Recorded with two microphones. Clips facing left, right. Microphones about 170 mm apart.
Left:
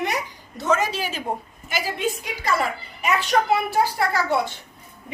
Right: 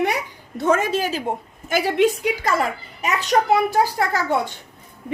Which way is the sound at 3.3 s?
35° right (ahead or behind).